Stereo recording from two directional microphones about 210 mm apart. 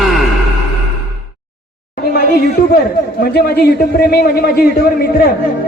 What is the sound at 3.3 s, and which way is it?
A man's voice, 50° left (ahead or behind).